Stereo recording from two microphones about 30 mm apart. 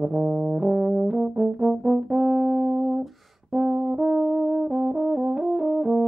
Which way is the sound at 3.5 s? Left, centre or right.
Right.